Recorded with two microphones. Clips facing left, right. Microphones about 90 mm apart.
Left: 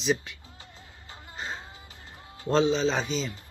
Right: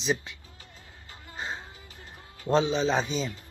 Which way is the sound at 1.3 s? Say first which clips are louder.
Right 1 dB; 15° right (ahead or behind).